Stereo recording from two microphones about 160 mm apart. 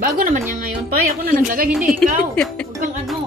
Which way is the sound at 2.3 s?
5° left (ahead or behind).